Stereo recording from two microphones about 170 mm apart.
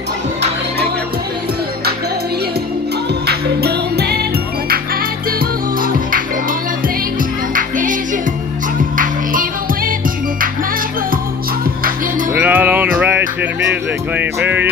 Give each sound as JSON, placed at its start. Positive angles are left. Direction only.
{"t": 3.3, "sound": "music", "side_deg": -70}
{"t": 7.5, "sound": "music", "side_deg": -50}
{"t": 12.4, "sound": "music", "side_deg": -10}